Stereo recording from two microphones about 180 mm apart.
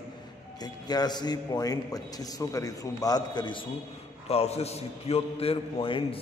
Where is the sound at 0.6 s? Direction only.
20° left (ahead or behind).